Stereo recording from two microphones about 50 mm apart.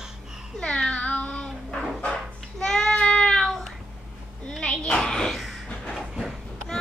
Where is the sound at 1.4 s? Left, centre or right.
Centre.